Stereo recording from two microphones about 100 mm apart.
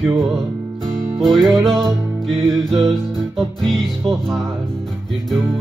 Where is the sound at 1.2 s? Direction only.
5° left (ahead or behind).